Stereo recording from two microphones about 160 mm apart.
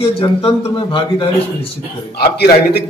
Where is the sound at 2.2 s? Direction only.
85° left.